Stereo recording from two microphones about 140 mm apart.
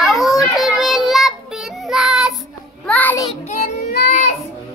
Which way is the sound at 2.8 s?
10° left (ahead or behind).